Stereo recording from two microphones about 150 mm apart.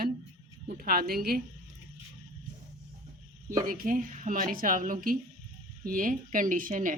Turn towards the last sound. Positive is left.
turn(degrees=-60)  # may be behind; listen again after turning